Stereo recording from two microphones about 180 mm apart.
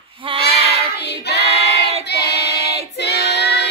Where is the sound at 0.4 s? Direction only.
65° left (ahead or behind).